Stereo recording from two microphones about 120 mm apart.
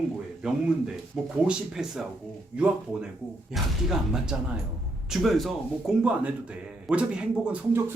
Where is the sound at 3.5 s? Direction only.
5° right (ahead or behind).